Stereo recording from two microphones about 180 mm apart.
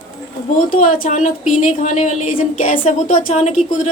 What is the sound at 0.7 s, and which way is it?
A woman's voice, 45° left (ahead or behind).